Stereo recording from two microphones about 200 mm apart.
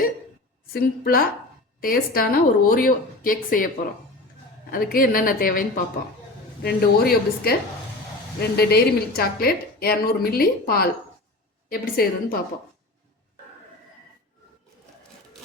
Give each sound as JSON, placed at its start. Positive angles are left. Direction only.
{"t": 0.7, "sound": "a woman's voice", "side_deg": 45}
{"t": 4.7, "sound": "a woman's voice", "side_deg": 45}